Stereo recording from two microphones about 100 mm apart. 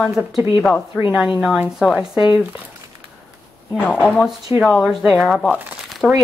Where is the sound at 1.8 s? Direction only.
5° right (ahead or behind).